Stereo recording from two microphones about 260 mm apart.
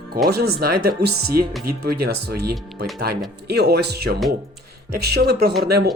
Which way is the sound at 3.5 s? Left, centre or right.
Right.